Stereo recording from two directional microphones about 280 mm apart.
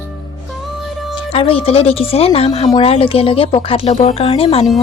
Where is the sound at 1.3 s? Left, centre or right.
Centre.